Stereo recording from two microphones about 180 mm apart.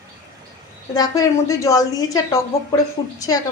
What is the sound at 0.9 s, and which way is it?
A woman's voice, 20° left (ahead or behind).